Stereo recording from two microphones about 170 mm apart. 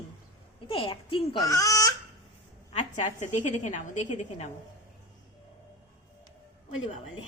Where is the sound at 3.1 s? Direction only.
45° left (ahead or behind).